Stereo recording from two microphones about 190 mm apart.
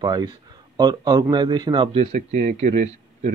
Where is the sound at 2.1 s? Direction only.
40° right (ahead or behind).